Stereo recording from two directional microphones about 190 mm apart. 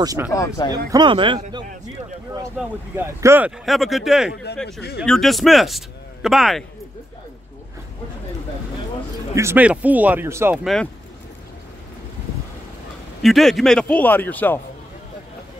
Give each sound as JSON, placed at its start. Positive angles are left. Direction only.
{"t": 0.0, "sound": "speech", "side_deg": -20}
{"t": 2.6, "sound": "speech", "side_deg": -5}
{"t": 9.3, "sound": "speech", "side_deg": -15}
{"t": 10.6, "sound": "speech", "side_deg": 0}
{"t": 13.2, "sound": "a man's voice", "side_deg": 0}